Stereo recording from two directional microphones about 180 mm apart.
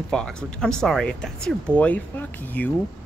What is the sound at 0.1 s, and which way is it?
Speech, 5° left (ahead or behind).